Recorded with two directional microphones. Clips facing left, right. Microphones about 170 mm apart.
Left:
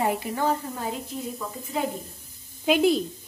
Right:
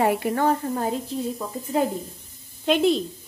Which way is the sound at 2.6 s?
5° left (ahead or behind).